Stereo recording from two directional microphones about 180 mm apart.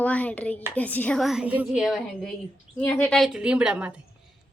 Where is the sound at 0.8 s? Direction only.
10° left (ahead or behind).